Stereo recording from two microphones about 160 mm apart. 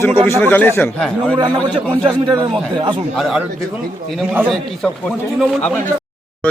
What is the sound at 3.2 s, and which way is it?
A man's voice, centre (ahead or behind).